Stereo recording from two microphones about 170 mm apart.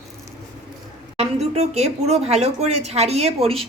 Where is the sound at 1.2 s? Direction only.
40° right (ahead or behind).